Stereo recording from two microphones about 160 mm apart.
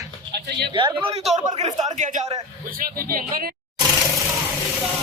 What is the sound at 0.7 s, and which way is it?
Speech, 30° right (ahead or behind).